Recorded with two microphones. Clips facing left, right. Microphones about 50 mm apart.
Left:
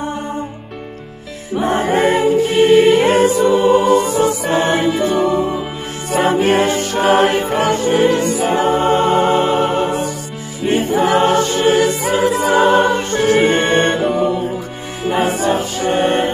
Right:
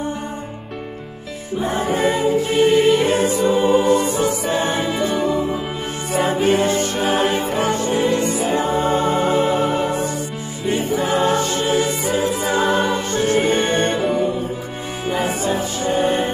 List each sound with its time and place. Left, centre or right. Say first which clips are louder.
1.6 s music: left 5 dB; left
3.4 s music: left 3 dB; left
4.8 s music: left 5 dB; centre
6.1 s music: left 4 dB; left
8.5 s music: left 6 dB; left
10.6 s music: left 4 dB; left
11.0 s music: left 6 dB; left
12.6 s music: left 6 dB; left
13.6 s music: left 4 dB; left
15.1 s music: left 5 dB; left